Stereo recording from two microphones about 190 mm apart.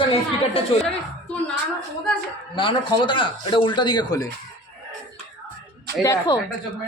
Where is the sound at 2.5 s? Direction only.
25° left (ahead or behind).